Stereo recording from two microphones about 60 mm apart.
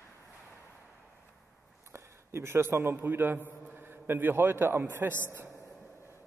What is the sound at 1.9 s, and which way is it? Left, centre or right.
A man's voice, right.